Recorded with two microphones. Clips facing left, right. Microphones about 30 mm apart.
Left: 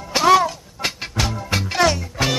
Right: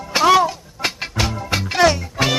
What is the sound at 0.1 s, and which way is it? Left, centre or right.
Music, centre.